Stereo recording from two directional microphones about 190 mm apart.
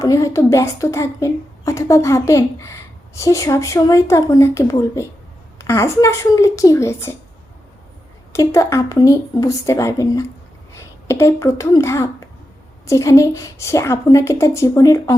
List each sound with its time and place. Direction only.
0.0 s a woman's voice: 15° left (ahead or behind)
8.3 s a woman's voice: 15° left (ahead or behind)